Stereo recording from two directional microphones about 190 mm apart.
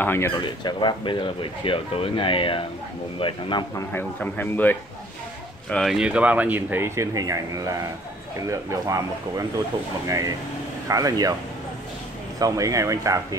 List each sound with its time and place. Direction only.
0.0 s speech: 10° left (ahead or behind)
0.5 s speech: 25° left (ahead or behind)
3.9 s speech: 10° left (ahead or behind); by 11.3 s 20° right (ahead or behind)
12.4 s speech: 20° right (ahead or behind)